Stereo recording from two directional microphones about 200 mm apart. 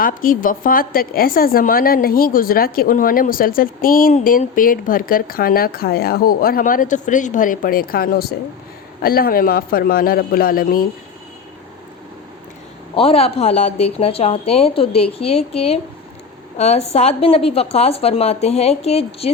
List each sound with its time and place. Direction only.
0.0 s a woman's voice: 45° left (ahead or behind)
13.0 s a woman's voice: 30° left (ahead or behind)